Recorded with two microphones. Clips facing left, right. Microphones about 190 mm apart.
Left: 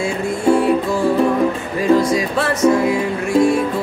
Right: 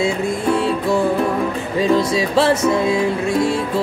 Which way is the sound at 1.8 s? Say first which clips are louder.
Left 2 dB; 30° right (ahead or behind).